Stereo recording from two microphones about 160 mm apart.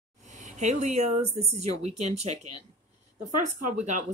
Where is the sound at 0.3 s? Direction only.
50° right (ahead or behind).